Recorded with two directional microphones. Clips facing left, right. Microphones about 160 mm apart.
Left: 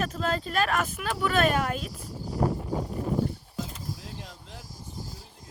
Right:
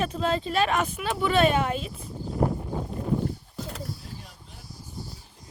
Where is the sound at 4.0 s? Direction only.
90° left.